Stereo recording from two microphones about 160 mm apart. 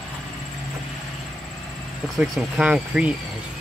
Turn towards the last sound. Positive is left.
turn(degrees=-5)  # may be behind; listen again after turning